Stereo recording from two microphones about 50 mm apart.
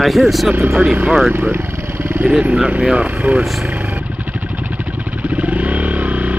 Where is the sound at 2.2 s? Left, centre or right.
Right.